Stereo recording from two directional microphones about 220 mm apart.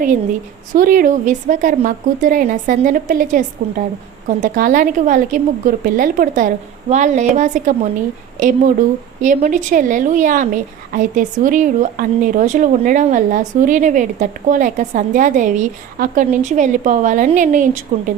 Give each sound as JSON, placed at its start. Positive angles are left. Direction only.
{"t": 0.7, "sound": "a woman's voice", "side_deg": -40}